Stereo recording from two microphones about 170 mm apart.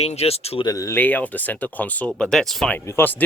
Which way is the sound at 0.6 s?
20° left (ahead or behind).